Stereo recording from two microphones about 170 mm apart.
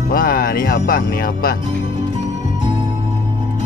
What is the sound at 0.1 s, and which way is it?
Speech, 60° left (ahead or behind).